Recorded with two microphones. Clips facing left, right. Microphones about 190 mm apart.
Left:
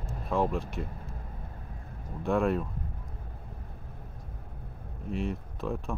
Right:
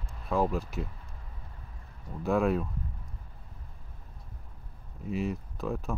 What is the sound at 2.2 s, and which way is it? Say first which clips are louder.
Speech: even; centre (ahead or behind).